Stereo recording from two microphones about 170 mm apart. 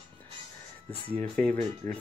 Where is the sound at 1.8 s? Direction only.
55° right (ahead or behind).